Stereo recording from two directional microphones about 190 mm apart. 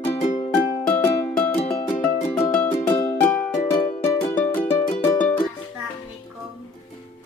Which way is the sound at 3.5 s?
45° left (ahead or behind).